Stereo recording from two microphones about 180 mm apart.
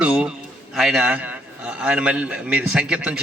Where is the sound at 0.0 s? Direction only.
5° right (ahead or behind).